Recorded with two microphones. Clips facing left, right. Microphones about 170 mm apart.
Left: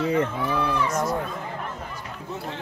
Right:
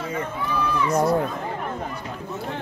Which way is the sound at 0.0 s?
75° left (ahead or behind).